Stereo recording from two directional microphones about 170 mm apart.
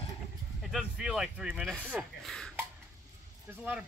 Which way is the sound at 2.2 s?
Centre (ahead or behind).